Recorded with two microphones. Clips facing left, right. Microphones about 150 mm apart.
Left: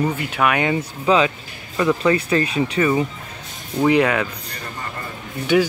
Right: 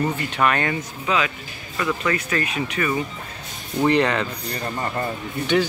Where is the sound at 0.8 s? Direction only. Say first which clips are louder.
Left 6 dB; 30° left (ahead or behind).